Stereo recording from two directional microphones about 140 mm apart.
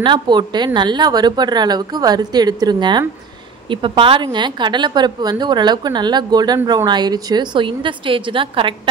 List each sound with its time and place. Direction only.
0.0 s a woman's voice: 35° right (ahead or behind)